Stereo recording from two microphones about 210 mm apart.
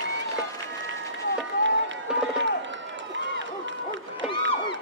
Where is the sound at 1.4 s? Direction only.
60° right (ahead or behind).